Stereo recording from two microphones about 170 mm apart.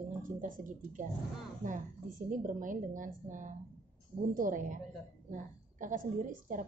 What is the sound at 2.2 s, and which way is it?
A woman's voice, 50° right (ahead or behind).